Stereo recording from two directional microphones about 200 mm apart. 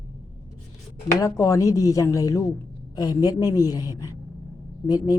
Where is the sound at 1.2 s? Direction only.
15° left (ahead or behind).